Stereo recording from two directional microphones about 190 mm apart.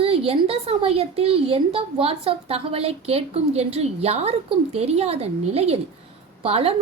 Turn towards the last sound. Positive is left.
turn(degrees=-30)  # may be behind; listen again after turning